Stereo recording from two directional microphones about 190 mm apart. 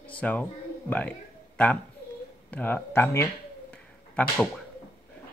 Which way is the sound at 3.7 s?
5° left (ahead or behind).